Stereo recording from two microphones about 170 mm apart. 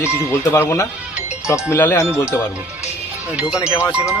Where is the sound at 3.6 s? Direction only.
15° left (ahead or behind).